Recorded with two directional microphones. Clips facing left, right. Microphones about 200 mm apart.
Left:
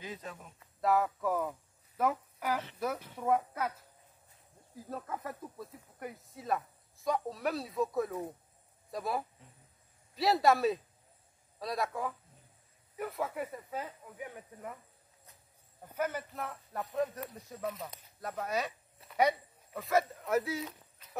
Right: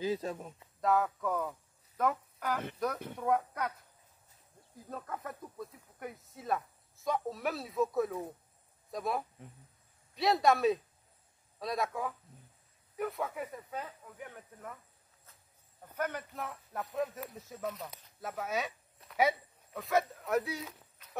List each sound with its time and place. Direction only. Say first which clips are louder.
0.0 s speech: right 10 dB; 35° right (ahead or behind)
0.7 s speech: even; 5° left (ahead or behind)
4.8 s speech: left 1 dB; 5° left (ahead or behind)
15.9 s speech: left 2 dB; 5° left (ahead or behind)